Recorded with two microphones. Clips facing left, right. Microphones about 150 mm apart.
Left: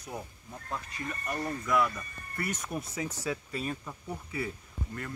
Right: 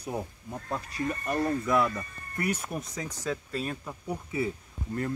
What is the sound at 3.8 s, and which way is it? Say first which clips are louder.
Speech: right 4 dB; 15° right (ahead or behind).